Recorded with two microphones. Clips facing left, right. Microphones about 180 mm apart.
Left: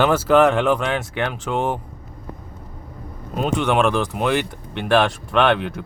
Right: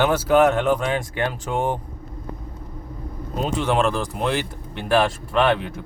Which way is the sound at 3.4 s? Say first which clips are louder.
Left 2 dB; 65° left (ahead or behind).